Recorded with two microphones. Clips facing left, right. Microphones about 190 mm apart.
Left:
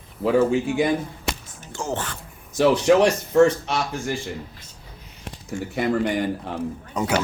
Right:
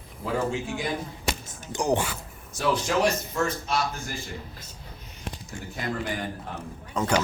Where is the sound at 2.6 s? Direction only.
70° left (ahead or behind).